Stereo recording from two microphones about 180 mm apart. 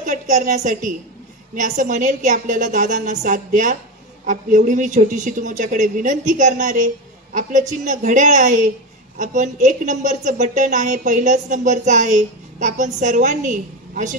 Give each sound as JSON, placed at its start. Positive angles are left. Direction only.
{"t": 0.0, "sound": "a woman's voice", "side_deg": -45}